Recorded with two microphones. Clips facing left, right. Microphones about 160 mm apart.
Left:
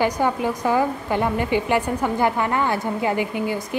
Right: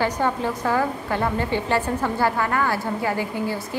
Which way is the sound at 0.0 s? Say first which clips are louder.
Left 2 dB; 15° left (ahead or behind).